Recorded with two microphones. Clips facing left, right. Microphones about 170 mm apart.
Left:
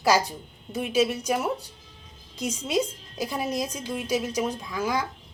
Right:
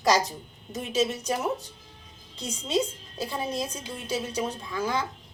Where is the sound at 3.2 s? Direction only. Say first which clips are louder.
Left 2 dB; 15° left (ahead or behind).